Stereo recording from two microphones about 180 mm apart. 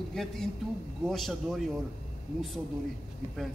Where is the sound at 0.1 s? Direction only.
Centre (ahead or behind).